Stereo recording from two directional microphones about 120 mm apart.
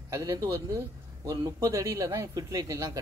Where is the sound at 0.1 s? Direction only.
30° right (ahead or behind).